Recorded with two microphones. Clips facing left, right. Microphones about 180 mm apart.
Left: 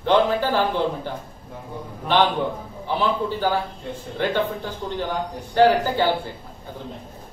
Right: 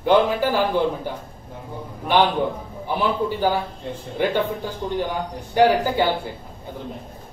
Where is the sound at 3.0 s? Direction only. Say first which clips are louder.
Right 1 dB; 15° right (ahead or behind).